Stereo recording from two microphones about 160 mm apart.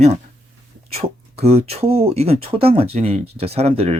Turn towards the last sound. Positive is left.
turn(degrees=-40)  # may be behind; listen again after turning